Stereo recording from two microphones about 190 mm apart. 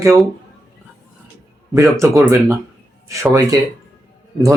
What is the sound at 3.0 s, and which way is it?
Speech, 15° right (ahead or behind).